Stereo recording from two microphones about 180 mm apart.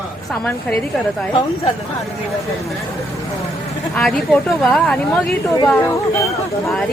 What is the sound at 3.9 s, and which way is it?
Speech, 5° left (ahead or behind).